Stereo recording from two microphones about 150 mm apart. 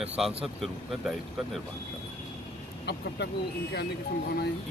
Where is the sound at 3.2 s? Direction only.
90° left.